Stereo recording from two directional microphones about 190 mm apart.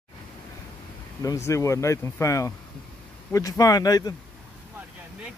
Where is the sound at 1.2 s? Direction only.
15° left (ahead or behind).